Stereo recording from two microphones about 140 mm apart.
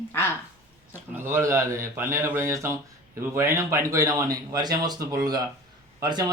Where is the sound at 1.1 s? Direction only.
20° right (ahead or behind).